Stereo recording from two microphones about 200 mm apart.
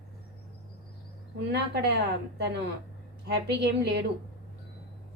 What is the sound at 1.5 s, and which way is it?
A woman's voice, 55° right (ahead or behind).